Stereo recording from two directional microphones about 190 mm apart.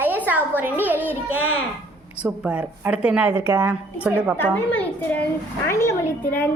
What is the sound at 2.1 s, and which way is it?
A woman's voice, 5° right (ahead or behind).